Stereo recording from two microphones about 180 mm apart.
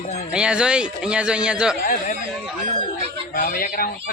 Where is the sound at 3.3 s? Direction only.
55° left (ahead or behind).